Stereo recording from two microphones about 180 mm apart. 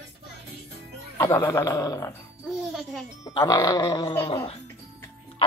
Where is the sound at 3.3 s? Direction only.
20° left (ahead or behind).